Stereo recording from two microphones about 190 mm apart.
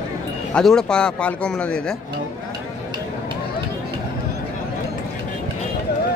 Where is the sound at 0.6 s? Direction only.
5° left (ahead or behind).